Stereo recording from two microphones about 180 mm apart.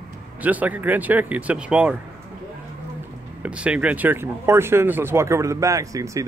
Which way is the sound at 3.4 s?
5° right (ahead or behind).